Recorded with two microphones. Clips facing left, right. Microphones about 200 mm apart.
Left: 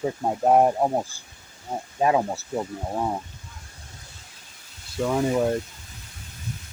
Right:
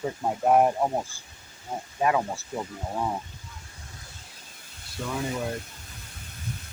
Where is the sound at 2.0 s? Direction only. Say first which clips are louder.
Left 3 dB; 25° left (ahead or behind).